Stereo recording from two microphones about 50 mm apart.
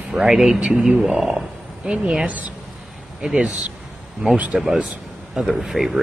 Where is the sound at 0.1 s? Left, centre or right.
Centre.